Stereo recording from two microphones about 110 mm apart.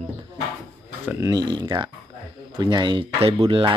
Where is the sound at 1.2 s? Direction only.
40° right (ahead or behind).